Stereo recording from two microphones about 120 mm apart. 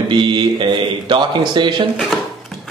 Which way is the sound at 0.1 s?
40° right (ahead or behind).